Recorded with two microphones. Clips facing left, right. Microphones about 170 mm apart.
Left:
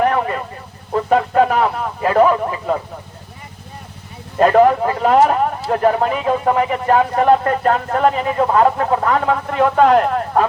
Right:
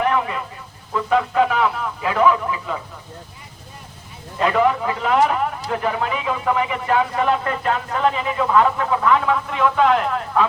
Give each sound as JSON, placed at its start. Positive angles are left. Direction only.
{"t": 0.0, "sound": "vehicle", "side_deg": 45}
{"t": 0.9, "sound": "speech", "side_deg": 45}
{"t": 4.4, "sound": "speech", "side_deg": 45}